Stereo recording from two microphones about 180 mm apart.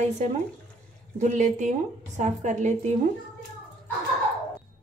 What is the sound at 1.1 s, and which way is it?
A woman's voice, 40° right (ahead or behind).